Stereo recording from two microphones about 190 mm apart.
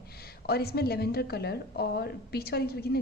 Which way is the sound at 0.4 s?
55° left (ahead or behind).